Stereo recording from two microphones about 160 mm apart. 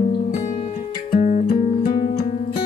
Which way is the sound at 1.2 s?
50° left (ahead or behind).